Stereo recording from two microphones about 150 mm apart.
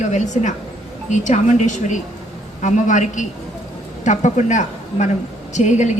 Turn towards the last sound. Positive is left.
turn(degrees=50)  # may be behind; listen again after turning